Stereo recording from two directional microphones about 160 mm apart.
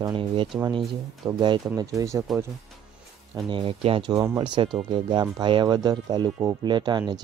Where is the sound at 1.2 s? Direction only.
15° right (ahead or behind).